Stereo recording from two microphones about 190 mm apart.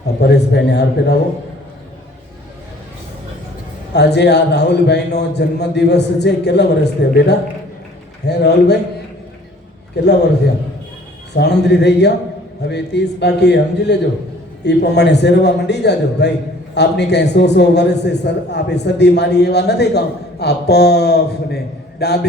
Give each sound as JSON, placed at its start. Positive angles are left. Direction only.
{"t": 0.2, "sound": "a man's voice", "side_deg": 65}
{"t": 3.9, "sound": "a man's voice", "side_deg": 65}
{"t": 11.3, "sound": "a man's voice", "side_deg": 60}